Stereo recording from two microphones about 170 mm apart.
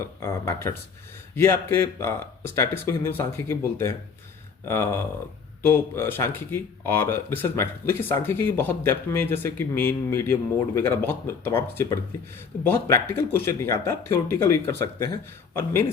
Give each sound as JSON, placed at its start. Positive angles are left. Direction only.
{"t": 0.0, "sound": "speech", "side_deg": 15}